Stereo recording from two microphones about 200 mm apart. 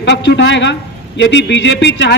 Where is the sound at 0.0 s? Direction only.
60° left (ahead or behind).